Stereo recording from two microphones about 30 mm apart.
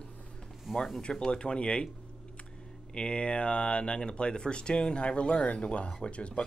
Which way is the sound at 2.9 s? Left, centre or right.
Left.